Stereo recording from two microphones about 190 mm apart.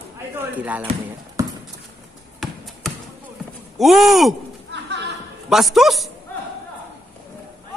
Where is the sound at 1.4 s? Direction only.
15° right (ahead or behind).